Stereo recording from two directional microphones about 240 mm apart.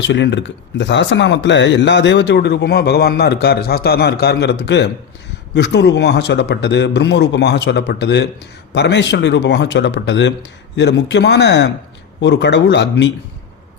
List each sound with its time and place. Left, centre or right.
0.0 s speech: left